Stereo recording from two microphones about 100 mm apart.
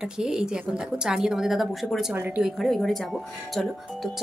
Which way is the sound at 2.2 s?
15° right (ahead or behind).